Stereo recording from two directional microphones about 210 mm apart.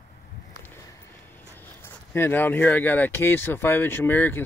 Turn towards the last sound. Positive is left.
turn(degrees=10)  # may be behind; listen again after turning